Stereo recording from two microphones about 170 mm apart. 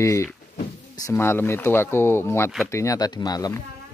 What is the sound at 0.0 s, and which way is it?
Speech, 15° left (ahead or behind).